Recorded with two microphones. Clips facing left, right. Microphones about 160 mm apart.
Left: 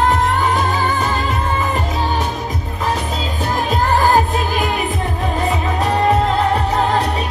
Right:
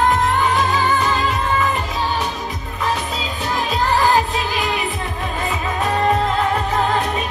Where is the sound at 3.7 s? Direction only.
45° left (ahead or behind).